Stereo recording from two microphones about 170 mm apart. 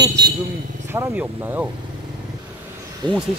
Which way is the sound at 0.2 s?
85° right.